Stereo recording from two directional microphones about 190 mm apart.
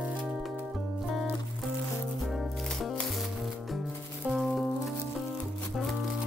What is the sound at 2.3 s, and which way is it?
Music, centre (ahead or behind).